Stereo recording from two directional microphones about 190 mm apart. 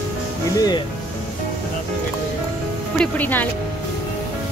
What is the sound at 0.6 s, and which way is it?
Speech, 20° left (ahead or behind).